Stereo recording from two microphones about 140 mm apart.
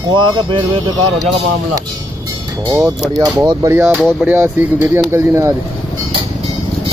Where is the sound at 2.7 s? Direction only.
25° right (ahead or behind).